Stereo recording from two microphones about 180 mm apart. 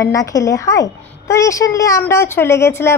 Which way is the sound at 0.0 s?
20° left (ahead or behind).